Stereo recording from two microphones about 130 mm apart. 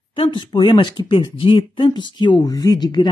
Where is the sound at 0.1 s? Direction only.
40° left (ahead or behind).